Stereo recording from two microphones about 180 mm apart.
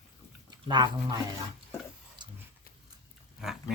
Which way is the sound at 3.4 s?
5° right (ahead or behind).